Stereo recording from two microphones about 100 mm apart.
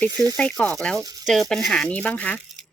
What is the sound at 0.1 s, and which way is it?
Speech, 40° right (ahead or behind).